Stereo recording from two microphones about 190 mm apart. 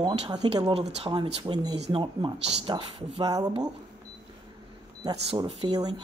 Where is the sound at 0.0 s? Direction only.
25° right (ahead or behind).